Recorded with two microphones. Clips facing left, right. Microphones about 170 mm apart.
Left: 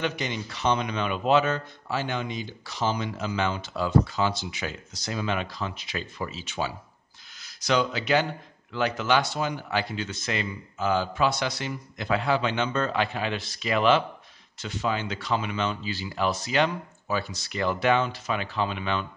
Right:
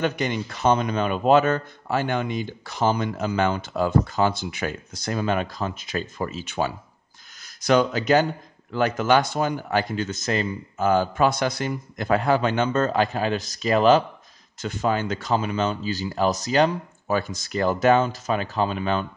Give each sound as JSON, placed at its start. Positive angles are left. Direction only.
{"t": 0.0, "sound": "speech", "side_deg": -50}